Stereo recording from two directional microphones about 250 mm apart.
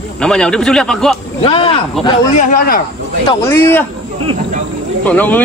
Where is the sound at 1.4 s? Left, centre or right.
Left.